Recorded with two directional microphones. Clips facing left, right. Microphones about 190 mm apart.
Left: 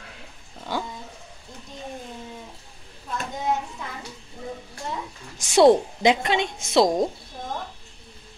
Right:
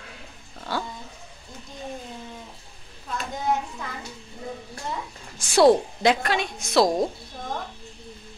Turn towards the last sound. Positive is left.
turn(degrees=25)  # may be behind; listen again after turning